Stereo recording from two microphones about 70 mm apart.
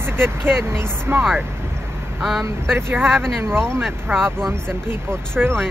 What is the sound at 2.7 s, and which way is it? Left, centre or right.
Speech, right.